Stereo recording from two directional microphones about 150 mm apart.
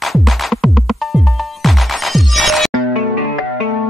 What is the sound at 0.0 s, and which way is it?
Music, centre (ahead or behind).